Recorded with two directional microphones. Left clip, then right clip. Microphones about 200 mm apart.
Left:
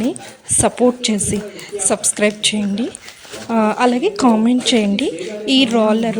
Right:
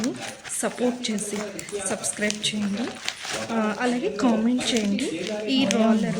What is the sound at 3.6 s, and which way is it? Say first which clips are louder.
A woman's voice: left 12 dB; 30° left (ahead or behind).